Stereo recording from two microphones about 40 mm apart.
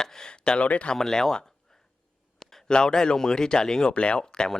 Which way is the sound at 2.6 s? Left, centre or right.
Centre.